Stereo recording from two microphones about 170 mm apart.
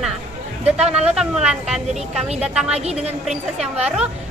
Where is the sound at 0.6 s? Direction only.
40° right (ahead or behind).